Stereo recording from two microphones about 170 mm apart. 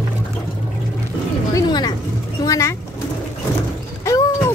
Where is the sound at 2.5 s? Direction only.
15° left (ahead or behind).